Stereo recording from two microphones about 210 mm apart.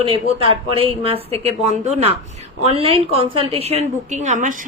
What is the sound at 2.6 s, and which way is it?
Speech, 25° right (ahead or behind).